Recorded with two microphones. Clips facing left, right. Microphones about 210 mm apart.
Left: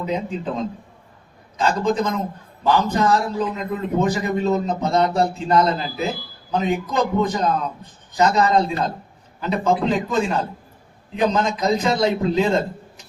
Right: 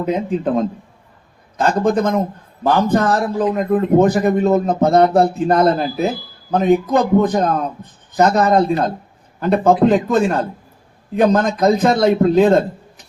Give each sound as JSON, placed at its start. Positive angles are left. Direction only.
{"t": 0.0, "sound": "a man's voice", "side_deg": -55}